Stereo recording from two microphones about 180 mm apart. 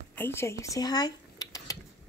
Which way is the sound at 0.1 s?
10° left (ahead or behind).